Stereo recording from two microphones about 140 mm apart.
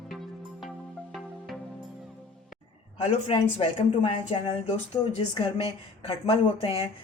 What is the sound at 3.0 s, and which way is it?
A woman's voice, 50° left (ahead or behind).